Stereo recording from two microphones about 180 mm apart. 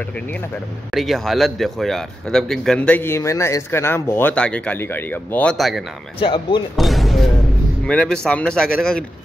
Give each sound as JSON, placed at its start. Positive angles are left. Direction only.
{"t": 0.0, "sound": "a man's voice", "side_deg": 5}
{"t": 6.1, "sound": "speech", "side_deg": 25}
{"t": 6.8, "sound": "a man's voice", "side_deg": 0}